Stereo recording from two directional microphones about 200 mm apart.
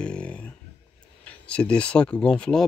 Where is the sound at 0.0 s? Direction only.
5° left (ahead or behind).